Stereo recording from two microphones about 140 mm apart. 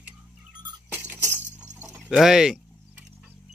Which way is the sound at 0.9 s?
15° right (ahead or behind).